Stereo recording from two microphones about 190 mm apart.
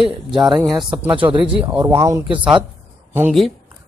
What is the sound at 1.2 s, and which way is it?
Speech, 25° right (ahead or behind).